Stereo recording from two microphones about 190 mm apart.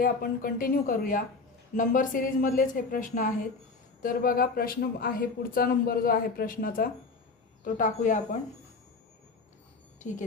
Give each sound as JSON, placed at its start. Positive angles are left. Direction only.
{"t": 0.0, "sound": "speech", "side_deg": 50}
{"t": 10.0, "sound": "a woman's voice", "side_deg": 40}